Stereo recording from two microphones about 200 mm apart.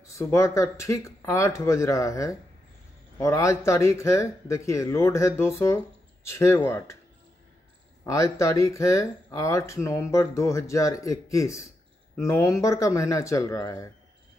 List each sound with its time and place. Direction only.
0.0 s speech: 15° left (ahead or behind)
8.0 s speech: 15° left (ahead or behind)